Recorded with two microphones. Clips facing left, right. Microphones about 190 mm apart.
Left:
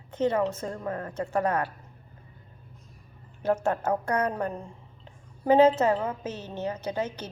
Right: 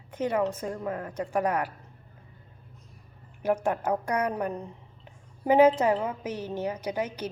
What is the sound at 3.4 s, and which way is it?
A woman's voice, 10° right (ahead or behind).